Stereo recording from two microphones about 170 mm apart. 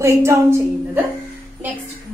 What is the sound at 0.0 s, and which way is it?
A woman's voice, 15° right (ahead or behind).